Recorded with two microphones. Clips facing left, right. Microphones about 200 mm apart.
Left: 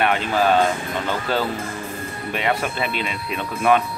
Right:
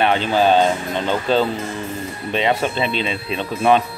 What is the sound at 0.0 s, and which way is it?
Speech, 30° right (ahead or behind).